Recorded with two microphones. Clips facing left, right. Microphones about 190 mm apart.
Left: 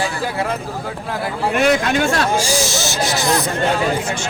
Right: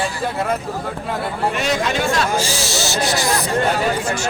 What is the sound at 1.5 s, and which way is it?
Speech, 55° left (ahead or behind).